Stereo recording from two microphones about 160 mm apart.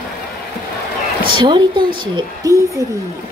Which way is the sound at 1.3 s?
30° right (ahead or behind).